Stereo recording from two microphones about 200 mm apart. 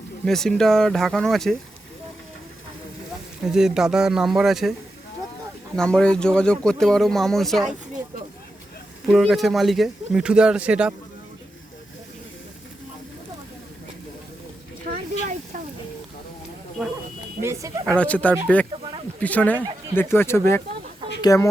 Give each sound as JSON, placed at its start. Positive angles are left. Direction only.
{"t": 0.3, "sound": "speech", "side_deg": 0}
{"t": 3.4, "sound": "speech", "side_deg": -5}
{"t": 5.7, "sound": "speech", "side_deg": 5}
{"t": 9.0, "sound": "speech", "side_deg": -5}
{"t": 14.9, "sound": "a sound", "side_deg": -40}
{"t": 17.4, "sound": "a sound", "side_deg": -15}
{"t": 17.8, "sound": "speech", "side_deg": 5}